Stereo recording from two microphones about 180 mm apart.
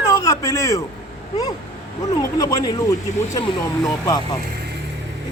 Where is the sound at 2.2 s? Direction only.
20° left (ahead or behind).